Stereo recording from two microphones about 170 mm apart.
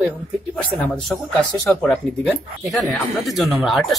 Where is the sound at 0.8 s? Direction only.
5° left (ahead or behind).